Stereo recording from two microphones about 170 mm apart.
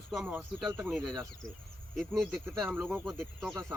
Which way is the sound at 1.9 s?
Centre (ahead or behind).